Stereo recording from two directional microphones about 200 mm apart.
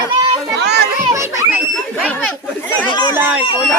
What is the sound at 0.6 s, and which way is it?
Children playing, 55° right (ahead or behind).